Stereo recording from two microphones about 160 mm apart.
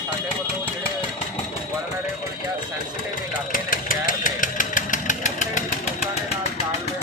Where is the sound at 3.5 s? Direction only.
60° left (ahead or behind).